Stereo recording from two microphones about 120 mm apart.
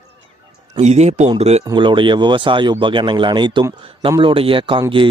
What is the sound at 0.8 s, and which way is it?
Speech, 70° right (ahead or behind).